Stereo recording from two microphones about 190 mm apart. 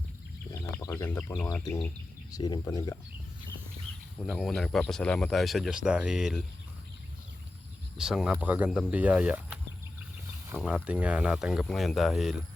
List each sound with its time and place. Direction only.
0.6 s speech: 15° left (ahead or behind)
4.2 s speech: centre (ahead or behind)
7.9 s speech: 5° right (ahead or behind)
10.6 s speech: 5° left (ahead or behind)